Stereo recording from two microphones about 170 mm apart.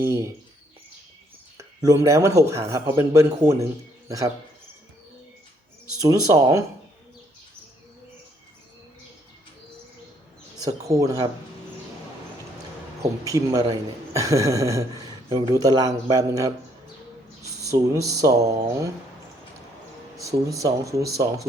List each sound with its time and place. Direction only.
0.0 s a man's voice: 20° right (ahead or behind)
1.5 s speech: 20° right (ahead or behind)
6.0 s a man's voice: 20° right (ahead or behind)
10.6 s a man's voice: 20° right (ahead or behind)
13.0 s a man's voice: 20° right (ahead or behind)
20.2 s a man's voice: 20° right (ahead or behind)